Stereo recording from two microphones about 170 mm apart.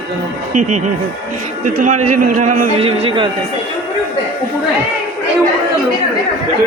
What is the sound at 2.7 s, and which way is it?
Speech, 35° right (ahead or behind).